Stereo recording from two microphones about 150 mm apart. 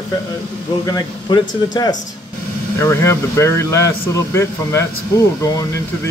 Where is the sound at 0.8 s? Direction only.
25° left (ahead or behind).